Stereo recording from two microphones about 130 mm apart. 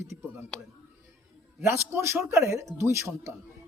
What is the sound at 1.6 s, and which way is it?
A man's voice, 20° right (ahead or behind).